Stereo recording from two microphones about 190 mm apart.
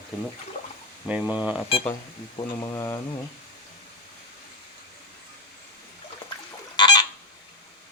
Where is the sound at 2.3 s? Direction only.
15° left (ahead or behind).